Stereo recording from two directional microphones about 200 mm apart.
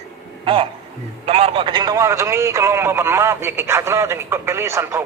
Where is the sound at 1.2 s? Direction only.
30° right (ahead or behind).